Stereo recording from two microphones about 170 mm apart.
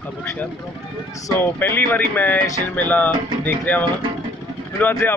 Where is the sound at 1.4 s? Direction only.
10° left (ahead or behind).